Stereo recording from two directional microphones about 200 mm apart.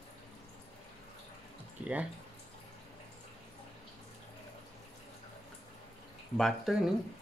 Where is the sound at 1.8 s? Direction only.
5° right (ahead or behind).